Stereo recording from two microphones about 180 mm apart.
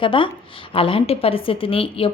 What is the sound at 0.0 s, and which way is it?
A woman's voice, 25° left (ahead or behind).